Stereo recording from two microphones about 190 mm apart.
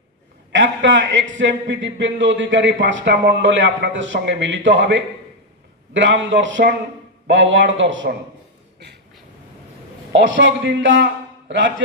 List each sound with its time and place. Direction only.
0.5 s a man's voice: 75° right (ahead or behind)
10.1 s a man's voice: 75° right (ahead or behind)